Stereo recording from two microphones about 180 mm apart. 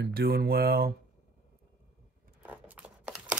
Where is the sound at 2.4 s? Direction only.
10° right (ahead or behind).